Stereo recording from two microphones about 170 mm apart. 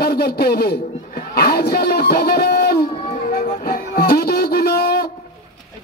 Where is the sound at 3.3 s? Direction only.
60° left (ahead or behind).